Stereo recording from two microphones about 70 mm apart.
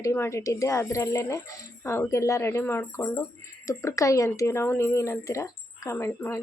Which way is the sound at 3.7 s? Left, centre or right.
Left.